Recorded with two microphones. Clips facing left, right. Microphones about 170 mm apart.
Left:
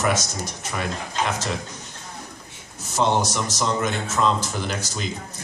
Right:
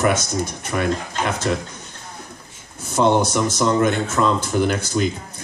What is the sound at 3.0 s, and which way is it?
A man's voice, 55° right (ahead or behind).